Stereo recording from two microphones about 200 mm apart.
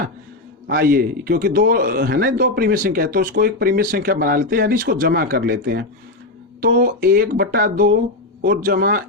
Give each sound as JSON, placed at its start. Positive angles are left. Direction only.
{"t": 0.7, "sound": "speech", "side_deg": -45}